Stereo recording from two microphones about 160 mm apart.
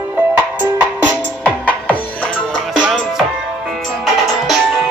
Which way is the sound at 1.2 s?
10° left (ahead or behind).